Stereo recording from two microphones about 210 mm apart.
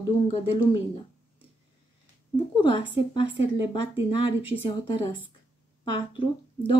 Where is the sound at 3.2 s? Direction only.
60° right (ahead or behind).